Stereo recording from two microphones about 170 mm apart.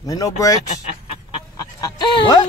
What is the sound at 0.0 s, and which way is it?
Speech, 20° left (ahead or behind).